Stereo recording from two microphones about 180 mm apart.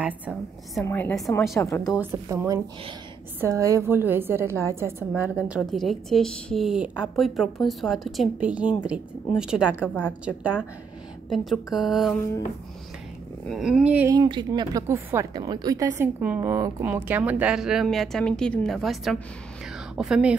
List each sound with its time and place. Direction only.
0.0 s a woman's voice: 5° right (ahead or behind)
0.8 s a woman's voice: 10° left (ahead or behind)
1.6 s a woman's voice: 15° left (ahead or behind)
2.0 s a woman's voice: 15° right (ahead or behind)
13.5 s speech: centre (ahead or behind)
14.1 s a woman's voice: 25° right (ahead or behind); by 20.3 s 5° right (ahead or behind)